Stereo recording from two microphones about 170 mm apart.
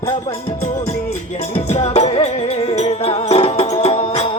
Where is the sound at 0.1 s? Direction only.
35° left (ahead or behind).